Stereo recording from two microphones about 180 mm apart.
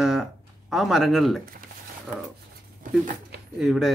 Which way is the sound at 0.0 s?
Centre (ahead or behind).